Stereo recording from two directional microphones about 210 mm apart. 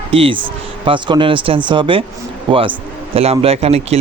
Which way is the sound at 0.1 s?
25° right (ahead or behind).